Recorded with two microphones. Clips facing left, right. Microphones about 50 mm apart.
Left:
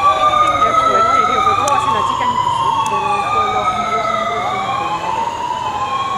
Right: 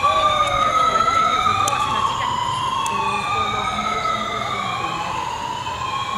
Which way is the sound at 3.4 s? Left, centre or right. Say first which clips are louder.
Left 6 dB; left.